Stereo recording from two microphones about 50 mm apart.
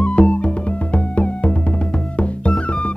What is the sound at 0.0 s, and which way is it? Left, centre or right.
Music, left.